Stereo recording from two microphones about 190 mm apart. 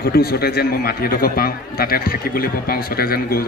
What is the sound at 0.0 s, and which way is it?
A man's voice, 55° left (ahead or behind).